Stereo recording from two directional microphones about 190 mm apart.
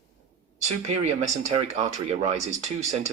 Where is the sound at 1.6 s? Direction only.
35° right (ahead or behind).